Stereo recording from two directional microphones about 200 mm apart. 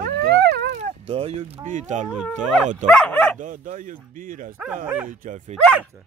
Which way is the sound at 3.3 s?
40° right (ahead or behind).